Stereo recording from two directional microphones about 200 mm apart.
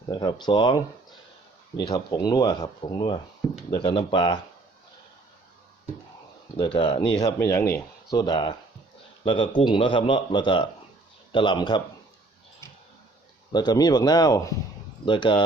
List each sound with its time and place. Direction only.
0.1 s speech: 20° left (ahead or behind)
1.8 s speech: 20° left (ahead or behind)
6.7 s speech: 25° left (ahead or behind)
13.5 s speech: 20° left (ahead or behind)